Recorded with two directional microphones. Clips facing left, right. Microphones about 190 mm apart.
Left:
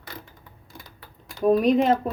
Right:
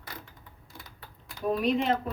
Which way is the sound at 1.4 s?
40° left (ahead or behind).